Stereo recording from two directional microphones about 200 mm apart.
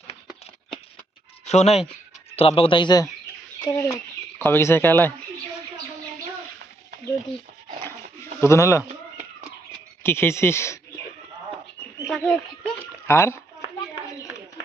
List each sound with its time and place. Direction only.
1.5 s a man's voice: 35° left (ahead or behind); by 5.1 s 10° left (ahead or behind)
7.9 s pigeon: 10° left (ahead or behind)
10.0 s speech: 10° left (ahead or behind)
12.0 s bird: centre (ahead or behind)
13.1 s speech: 15° left (ahead or behind)